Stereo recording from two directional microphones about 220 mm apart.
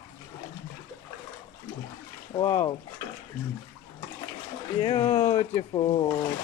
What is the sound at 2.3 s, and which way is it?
Speech, 20° left (ahead or behind).